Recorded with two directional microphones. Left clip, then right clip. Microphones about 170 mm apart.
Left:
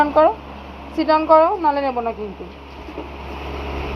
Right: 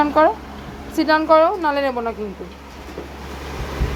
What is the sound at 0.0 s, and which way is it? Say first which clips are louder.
A woman's voice: left 1 dB; 25° right (ahead or behind).